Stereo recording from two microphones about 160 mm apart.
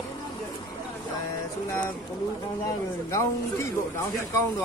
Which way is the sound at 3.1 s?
15° left (ahead or behind).